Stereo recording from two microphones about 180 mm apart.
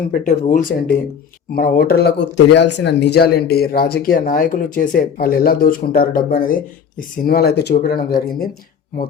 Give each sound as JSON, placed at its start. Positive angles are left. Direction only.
{"t": 0.1, "sound": "speech", "side_deg": 45}